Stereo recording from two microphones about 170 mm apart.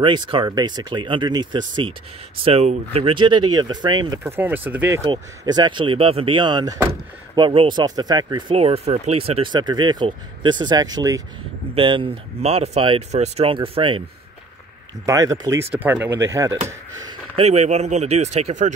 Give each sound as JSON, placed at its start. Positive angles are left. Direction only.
{"t": 0.0, "sound": "speech", "side_deg": -30}
{"t": 2.4, "sound": "speech", "side_deg": -40}
{"t": 4.2, "sound": "speech", "side_deg": -10}
{"t": 15.0, "sound": "speech", "side_deg": -20}
{"t": 17.4, "sound": "speech", "side_deg": -40}